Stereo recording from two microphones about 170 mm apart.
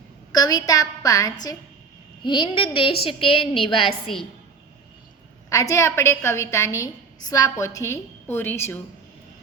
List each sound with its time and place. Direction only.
0.3 s a woman's voice: 20° left (ahead or behind)
5.5 s a woman's voice: 20° left (ahead or behind)